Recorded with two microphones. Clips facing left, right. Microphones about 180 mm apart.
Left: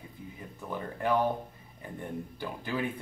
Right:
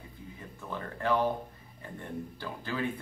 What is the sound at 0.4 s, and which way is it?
Music, 15° left (ahead or behind).